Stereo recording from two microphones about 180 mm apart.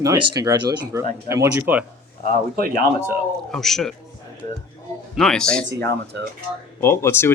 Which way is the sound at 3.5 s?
Centre (ahead or behind).